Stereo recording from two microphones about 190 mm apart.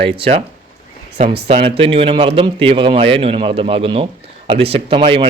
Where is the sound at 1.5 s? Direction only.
30° right (ahead or behind).